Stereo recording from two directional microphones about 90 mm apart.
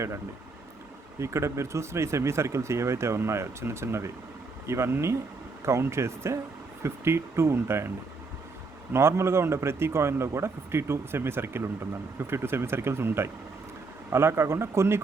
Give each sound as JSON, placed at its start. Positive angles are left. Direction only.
{"t": 1.2, "sound": "a man's voice", "side_deg": -30}